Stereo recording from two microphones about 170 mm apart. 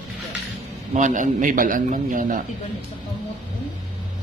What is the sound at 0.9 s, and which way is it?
A man's voice, 45° right (ahead or behind).